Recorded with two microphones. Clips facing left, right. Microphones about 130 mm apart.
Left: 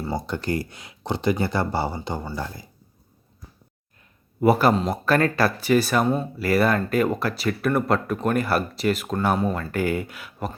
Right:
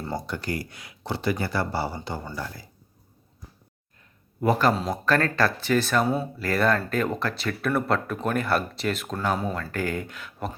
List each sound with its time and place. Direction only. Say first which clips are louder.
0.3 s speech: left 4 dB; 25° left (ahead or behind)
4.4 s speech: left 4 dB; 10° left (ahead or behind)
4.7 s speech: left 4 dB; centre (ahead or behind)
5.0 s speech: left 2 dB; 10° left (ahead or behind)